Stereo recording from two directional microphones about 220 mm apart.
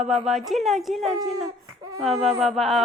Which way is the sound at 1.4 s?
15° right (ahead or behind).